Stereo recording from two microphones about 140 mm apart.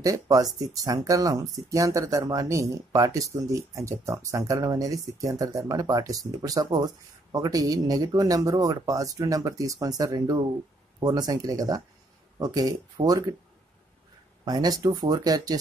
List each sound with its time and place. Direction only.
0.0 s speech: 25° right (ahead or behind)
14.4 s speech: 30° right (ahead or behind)